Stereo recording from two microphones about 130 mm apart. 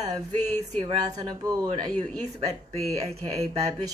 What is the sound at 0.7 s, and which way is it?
A woman's voice, 35° right (ahead or behind).